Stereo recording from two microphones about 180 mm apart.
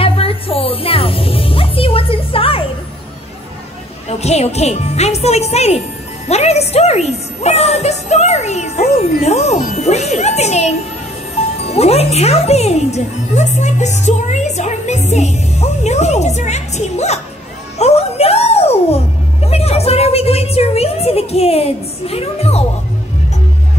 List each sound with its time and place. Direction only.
0.0 s music: 30° left (ahead or behind)
4.2 s speech: 35° left (ahead or behind)
17.7 s music: 35° left (ahead or behind)
19.4 s speech: 35° left (ahead or behind)